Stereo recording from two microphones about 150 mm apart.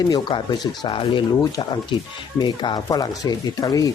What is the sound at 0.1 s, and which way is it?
Speech, 30° left (ahead or behind).